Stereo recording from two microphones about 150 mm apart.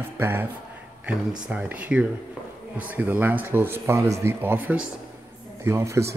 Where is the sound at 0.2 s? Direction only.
15° right (ahead or behind).